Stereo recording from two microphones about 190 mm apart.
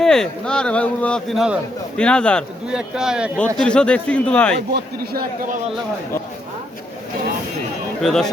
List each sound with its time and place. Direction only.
0.0 s speech: 5° left (ahead or behind)
4.7 s a man's voice: 50° right (ahead or behind)
8.0 s speech: 5° left (ahead or behind)